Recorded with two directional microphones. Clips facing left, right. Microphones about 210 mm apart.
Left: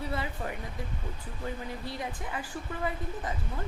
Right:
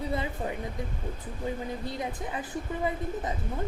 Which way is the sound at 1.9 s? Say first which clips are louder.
Right 3 dB; 20° right (ahead or behind).